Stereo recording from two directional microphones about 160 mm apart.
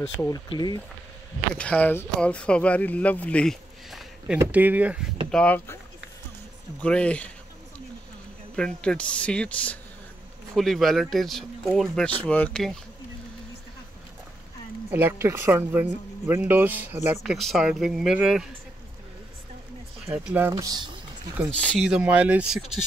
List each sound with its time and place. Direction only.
0.3 s speech: 25° left (ahead or behind)
1.6 s speech: 10° left (ahead or behind)
4.4 s speech: 10° right (ahead or behind)
5.3 s speech: 10° left (ahead or behind)
6.8 s speech: 5° left (ahead or behind)
8.5 s speech: 5° left (ahead or behind)
14.9 s speech: 15° right (ahead or behind)
17.2 s speech: centre (ahead or behind)
20.1 s speech: 10° right (ahead or behind)
21.5 s speech: 5° left (ahead or behind)
21.8 s speech: 5° right (ahead or behind)